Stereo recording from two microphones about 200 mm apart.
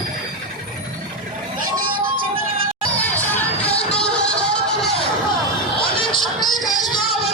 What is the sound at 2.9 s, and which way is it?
Music, 10° left (ahead or behind).